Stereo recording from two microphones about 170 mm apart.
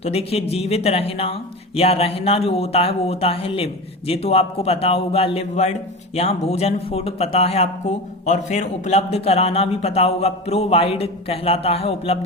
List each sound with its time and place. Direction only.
0.0 s speech: 35° left (ahead or behind)